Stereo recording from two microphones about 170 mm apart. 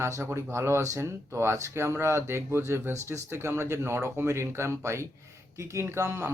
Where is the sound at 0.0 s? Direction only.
15° right (ahead or behind).